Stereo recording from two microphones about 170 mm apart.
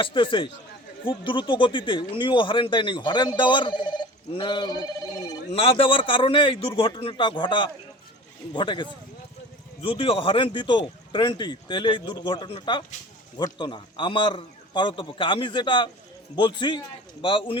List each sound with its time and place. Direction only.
0.0 s a man's voice: 30° left (ahead or behind)